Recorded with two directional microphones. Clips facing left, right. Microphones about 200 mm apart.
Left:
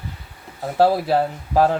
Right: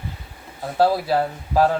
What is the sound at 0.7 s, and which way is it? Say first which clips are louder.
Speech: left 2 dB; 20° left (ahead or behind).